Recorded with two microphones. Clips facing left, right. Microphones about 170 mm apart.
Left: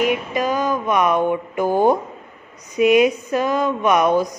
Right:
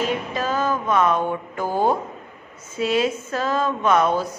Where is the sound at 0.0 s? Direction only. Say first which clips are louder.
Left 4 dB; 15° left (ahead or behind).